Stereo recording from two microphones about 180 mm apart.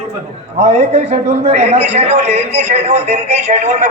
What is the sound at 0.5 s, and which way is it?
A man's voice, 35° right (ahead or behind).